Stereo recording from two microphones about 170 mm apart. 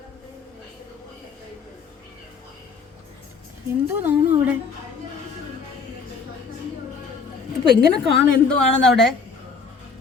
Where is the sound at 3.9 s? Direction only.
10° right (ahead or behind).